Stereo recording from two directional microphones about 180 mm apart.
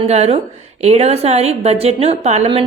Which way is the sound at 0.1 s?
35° right (ahead or behind).